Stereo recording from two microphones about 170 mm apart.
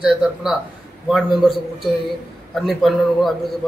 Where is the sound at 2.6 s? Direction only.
Centre (ahead or behind).